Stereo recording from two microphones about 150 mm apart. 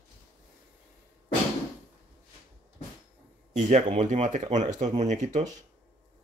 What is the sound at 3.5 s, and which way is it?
Speech, 50° right (ahead or behind).